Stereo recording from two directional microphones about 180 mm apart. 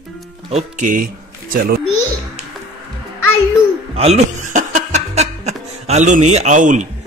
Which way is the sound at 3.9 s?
35° right (ahead or behind).